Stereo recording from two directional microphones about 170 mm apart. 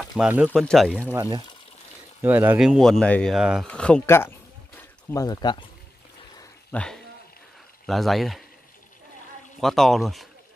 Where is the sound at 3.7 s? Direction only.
5° left (ahead or behind).